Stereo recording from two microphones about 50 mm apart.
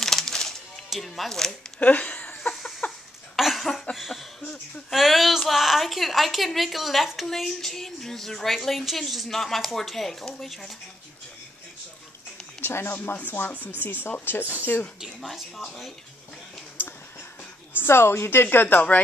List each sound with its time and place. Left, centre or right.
0.0 s music: centre
0.8 s a woman's voice: centre
1.8 s a sound: left
3.3 s a sound: centre
3.9 s a woman's voice: centre
12.6 s speech: left
12.9 s speech: left
15.2 s a woman's voice: centre
16.8 s a sound: left
17.7 s a woman's voice: left